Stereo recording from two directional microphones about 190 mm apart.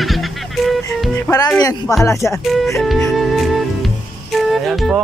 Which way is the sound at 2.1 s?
15° left (ahead or behind).